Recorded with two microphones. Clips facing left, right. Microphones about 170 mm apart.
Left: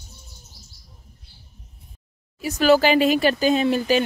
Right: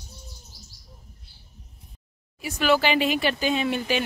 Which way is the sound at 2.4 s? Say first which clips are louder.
Left 5 dB; 40° left (ahead or behind).